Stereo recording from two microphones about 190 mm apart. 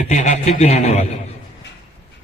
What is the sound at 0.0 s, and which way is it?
A man's voice, 40° left (ahead or behind).